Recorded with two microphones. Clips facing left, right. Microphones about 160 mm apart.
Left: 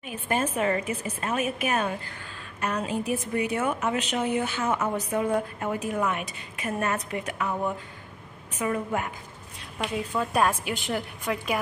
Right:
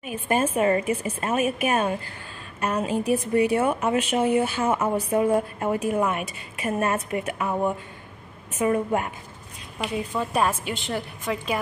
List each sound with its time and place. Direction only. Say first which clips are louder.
0.0 s a woman's voice: right 4 dB; 10° right (ahead or behind)
0.6 s a woman's voice: right 5 dB; 30° right (ahead or behind)
8.5 s a woman's voice: right 5 dB; 30° right (ahead or behind)
9.8 s a woman's voice: right 1 dB; 5° right (ahead or behind)